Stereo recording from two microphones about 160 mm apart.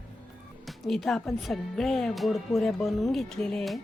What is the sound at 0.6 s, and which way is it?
Speech, centre (ahead or behind).